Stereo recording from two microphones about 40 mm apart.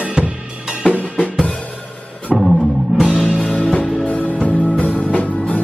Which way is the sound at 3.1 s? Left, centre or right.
Centre.